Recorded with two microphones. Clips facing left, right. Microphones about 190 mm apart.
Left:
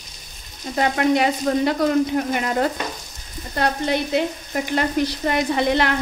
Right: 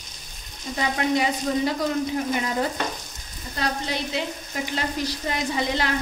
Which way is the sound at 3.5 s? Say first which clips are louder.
Left 6 dB; 60° left (ahead or behind).